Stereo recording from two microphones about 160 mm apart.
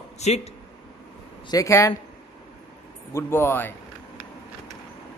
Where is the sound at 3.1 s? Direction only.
15° left (ahead or behind).